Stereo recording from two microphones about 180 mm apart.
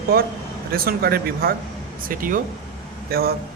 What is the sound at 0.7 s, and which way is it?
A man's voice, 60° right (ahead or behind).